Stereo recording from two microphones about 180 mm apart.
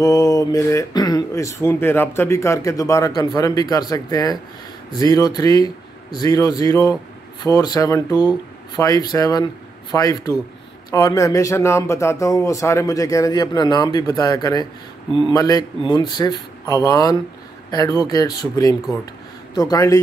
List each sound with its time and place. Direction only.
0.0 s speech: 20° left (ahead or behind)